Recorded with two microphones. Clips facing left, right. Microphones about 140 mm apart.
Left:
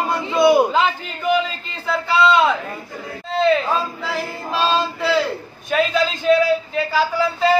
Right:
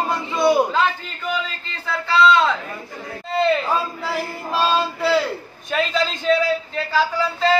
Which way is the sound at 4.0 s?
5° right (ahead or behind).